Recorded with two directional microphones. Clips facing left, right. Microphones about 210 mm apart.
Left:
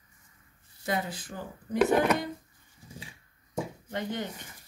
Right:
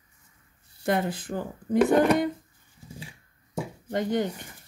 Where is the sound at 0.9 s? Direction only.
55° right (ahead or behind).